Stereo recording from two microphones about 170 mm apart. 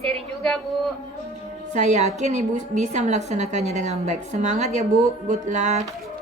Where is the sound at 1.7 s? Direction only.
45° right (ahead or behind).